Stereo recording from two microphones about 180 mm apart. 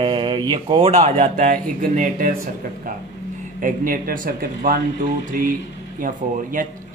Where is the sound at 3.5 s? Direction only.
50° right (ahead or behind).